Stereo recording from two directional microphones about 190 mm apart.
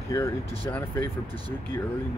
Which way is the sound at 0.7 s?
10° left (ahead or behind).